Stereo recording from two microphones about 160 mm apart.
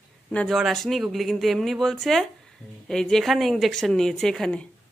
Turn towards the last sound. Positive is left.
turn(degrees=5)  # may be behind; listen again after turning